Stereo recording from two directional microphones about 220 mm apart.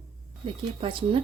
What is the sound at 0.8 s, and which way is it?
Speech, 25° right (ahead or behind).